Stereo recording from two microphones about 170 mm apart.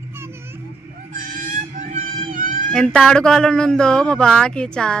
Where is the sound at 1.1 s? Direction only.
50° right (ahead or behind).